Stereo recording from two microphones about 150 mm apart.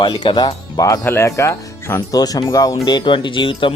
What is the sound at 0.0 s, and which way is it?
Speech, 35° left (ahead or behind).